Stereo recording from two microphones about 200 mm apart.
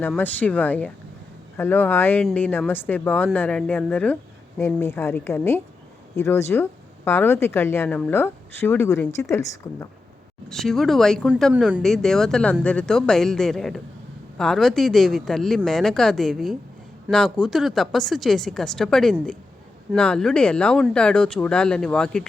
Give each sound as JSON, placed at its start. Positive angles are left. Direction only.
{"t": 0.0, "sound": "speech", "side_deg": 10}
{"t": 10.5, "sound": "speech", "side_deg": 0}